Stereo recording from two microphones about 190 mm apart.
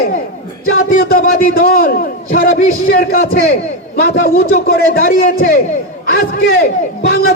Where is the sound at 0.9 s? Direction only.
50° left (ahead or behind).